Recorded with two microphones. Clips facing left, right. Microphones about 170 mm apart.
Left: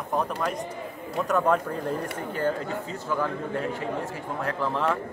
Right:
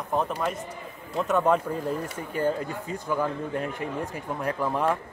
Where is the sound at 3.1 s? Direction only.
15° right (ahead or behind).